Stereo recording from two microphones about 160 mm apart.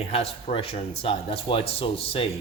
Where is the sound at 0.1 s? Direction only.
40° left (ahead or behind).